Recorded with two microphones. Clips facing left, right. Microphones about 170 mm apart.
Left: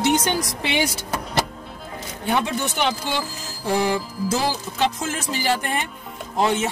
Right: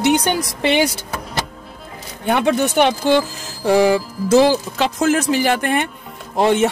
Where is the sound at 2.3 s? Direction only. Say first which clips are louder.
Right 7 dB; 65° right (ahead or behind).